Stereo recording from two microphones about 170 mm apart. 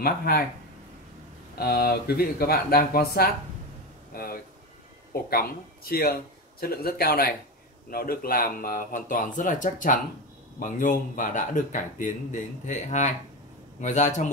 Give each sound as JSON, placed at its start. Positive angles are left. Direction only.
{"t": 0.0, "sound": "speech", "side_deg": 60}
{"t": 1.6, "sound": "speech", "side_deg": 65}